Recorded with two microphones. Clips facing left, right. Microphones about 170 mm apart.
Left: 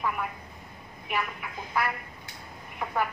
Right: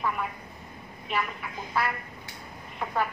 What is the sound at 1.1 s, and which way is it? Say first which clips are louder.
Speech: right 1 dB; 15° left (ahead or behind).